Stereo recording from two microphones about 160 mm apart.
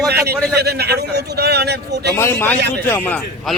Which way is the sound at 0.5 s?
85° right.